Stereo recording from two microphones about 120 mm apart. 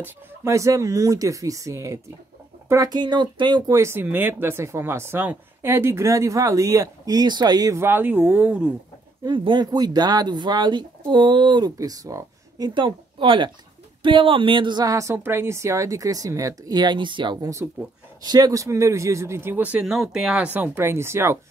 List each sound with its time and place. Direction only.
0.0 s speech: 25° right (ahead or behind); by 3.7 s 40° right (ahead or behind)
3.7 s speech: 20° right (ahead or behind)
7.8 s speech: 15° right (ahead or behind)
9.2 s speech: 40° right (ahead or behind); by 20.4 s 5° right (ahead or behind)
20.4 s speech: 15° right (ahead or behind)